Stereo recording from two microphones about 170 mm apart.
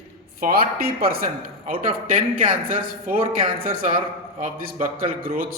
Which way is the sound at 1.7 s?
30° right (ahead or behind).